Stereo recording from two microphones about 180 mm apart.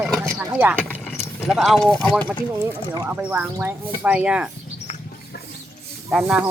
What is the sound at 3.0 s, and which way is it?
Speech, 10° right (ahead or behind).